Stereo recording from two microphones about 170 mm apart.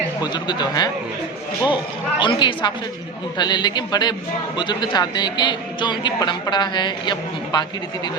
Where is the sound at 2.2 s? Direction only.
30° left (ahead or behind).